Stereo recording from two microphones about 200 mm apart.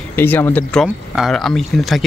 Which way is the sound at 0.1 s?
10° left (ahead or behind).